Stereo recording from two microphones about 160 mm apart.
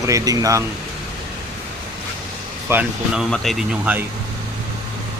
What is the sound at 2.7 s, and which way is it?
Speech, 10° right (ahead or behind).